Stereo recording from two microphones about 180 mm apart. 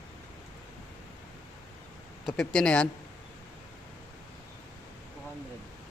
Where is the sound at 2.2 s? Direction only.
5° left (ahead or behind).